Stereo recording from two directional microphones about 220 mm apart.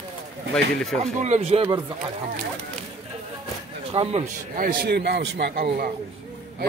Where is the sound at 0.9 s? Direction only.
30° right (ahead or behind).